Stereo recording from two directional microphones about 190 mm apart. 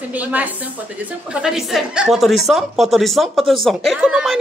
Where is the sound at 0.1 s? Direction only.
10° right (ahead or behind).